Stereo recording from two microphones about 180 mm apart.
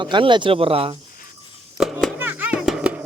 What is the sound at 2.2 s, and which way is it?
Music, 10° right (ahead or behind).